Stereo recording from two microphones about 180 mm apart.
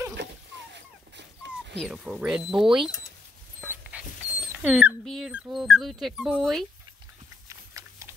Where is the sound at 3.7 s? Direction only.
5° right (ahead or behind).